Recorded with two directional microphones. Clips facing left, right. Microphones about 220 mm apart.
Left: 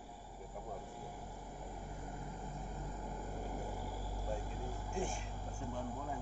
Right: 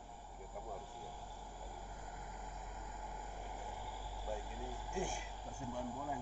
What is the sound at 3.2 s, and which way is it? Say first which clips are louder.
Vehicle: left 8 dB; 45° left (ahead or behind).